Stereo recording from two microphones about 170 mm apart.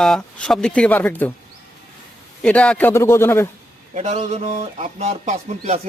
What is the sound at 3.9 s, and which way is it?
Speech, 40° right (ahead or behind).